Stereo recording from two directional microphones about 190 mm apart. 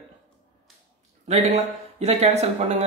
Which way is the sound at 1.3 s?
35° right (ahead or behind).